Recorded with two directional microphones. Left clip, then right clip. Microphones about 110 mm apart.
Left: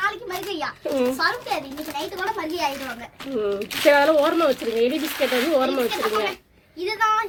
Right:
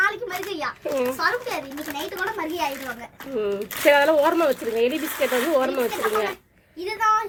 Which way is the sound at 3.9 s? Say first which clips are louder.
Even; 20° left (ahead or behind).